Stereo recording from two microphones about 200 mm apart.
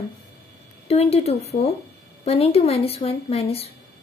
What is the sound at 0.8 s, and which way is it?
A woman's voice, 30° left (ahead or behind).